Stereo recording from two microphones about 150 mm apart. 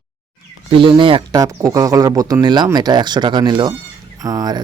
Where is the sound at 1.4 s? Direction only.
25° right (ahead or behind).